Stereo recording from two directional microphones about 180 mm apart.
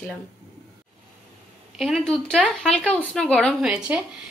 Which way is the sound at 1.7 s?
Centre (ahead or behind).